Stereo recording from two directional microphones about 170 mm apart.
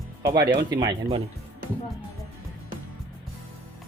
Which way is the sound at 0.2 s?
20° right (ahead or behind).